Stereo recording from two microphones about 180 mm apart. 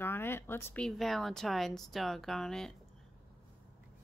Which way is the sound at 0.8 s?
Centre (ahead or behind).